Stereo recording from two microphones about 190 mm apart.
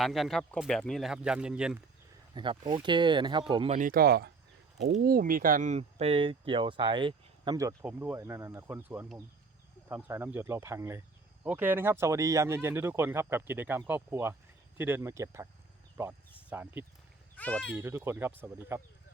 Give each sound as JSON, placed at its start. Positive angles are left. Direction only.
{"t": 0.0, "sound": "speech", "side_deg": 0}
{"t": 2.3, "sound": "speech", "side_deg": -25}
{"t": 3.8, "sound": "speech", "side_deg": -50}
{"t": 17.3, "sound": "speech", "side_deg": 5}
{"t": 17.7, "sound": "speech", "side_deg": -10}